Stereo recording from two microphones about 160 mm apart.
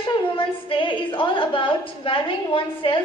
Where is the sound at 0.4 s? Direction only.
35° left (ahead or behind).